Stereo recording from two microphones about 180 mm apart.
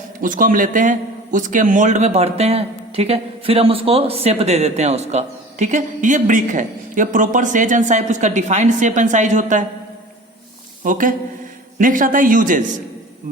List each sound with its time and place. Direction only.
0.2 s a man's voice: 50° right (ahead or behind)
10.8 s a man's voice: 50° right (ahead or behind)